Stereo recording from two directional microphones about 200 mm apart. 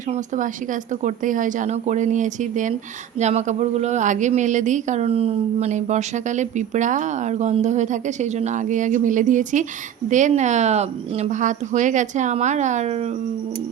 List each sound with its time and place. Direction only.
0.1 s speech: 40° right (ahead or behind)